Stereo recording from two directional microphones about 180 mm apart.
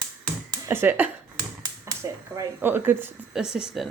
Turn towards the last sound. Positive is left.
turn(degrees=-5)  # may be behind; listen again after turning